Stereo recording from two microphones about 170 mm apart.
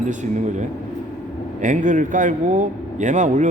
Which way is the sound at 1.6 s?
45° right (ahead or behind).